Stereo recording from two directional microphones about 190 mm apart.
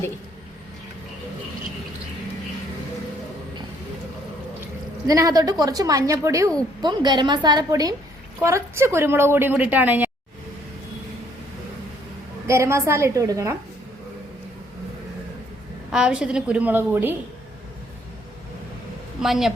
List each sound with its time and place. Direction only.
5.0 s a woman's voice: 20° right (ahead or behind)
12.5 s a woman's voice: 15° right (ahead or behind)
15.9 s a woman's voice: 5° right (ahead or behind)
19.2 s a woman's voice: centre (ahead or behind)